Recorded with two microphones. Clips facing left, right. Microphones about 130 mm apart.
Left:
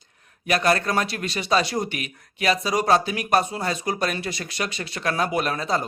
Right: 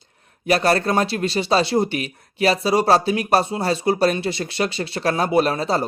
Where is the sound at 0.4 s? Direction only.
30° right (ahead or behind).